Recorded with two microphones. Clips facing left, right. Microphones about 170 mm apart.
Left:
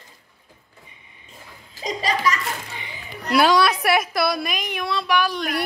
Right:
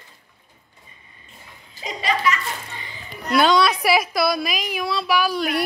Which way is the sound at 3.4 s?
5° left (ahead or behind).